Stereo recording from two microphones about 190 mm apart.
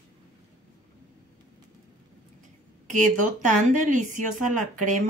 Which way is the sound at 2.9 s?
40° right (ahead or behind).